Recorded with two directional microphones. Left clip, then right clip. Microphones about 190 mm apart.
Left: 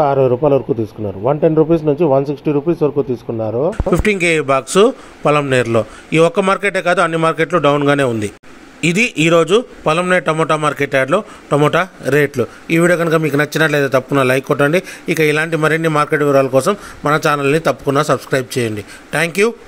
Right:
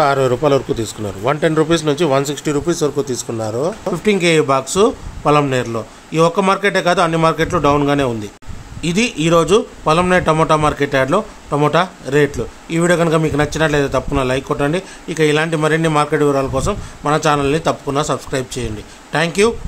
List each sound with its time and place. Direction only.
0.0 s speech: 5° right (ahead or behind)
3.9 s a man's voice: 15° left (ahead or behind)